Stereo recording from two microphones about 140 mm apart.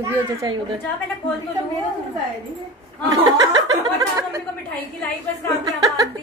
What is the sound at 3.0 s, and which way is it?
Speech, 25° right (ahead or behind).